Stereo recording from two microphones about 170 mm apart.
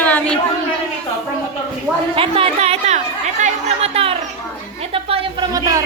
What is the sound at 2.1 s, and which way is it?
Chatter, 35° right (ahead or behind).